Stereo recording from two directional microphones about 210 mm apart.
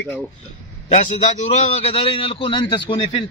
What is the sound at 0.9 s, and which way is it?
A man's voice, 35° left (ahead or behind).